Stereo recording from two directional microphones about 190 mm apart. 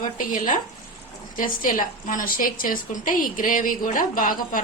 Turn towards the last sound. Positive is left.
turn(degrees=45)  # may be behind; listen again after turning